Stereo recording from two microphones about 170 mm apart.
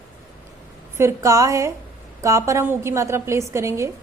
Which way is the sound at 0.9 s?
15° right (ahead or behind).